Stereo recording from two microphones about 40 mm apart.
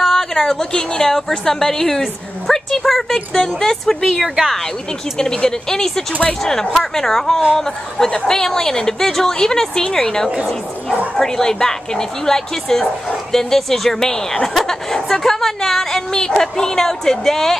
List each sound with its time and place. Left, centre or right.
0.0 s a woman's voice: centre